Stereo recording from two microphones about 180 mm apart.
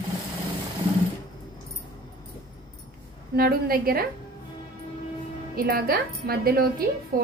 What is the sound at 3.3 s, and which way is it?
Speech, 55° right (ahead or behind).